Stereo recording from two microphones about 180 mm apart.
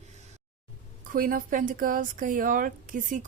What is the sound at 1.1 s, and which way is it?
Speech, 50° right (ahead or behind).